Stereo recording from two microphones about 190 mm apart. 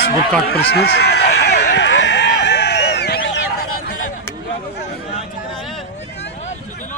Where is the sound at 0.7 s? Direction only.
60° left (ahead or behind).